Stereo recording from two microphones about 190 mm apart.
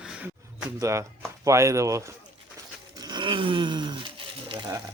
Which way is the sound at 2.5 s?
20° right (ahead or behind).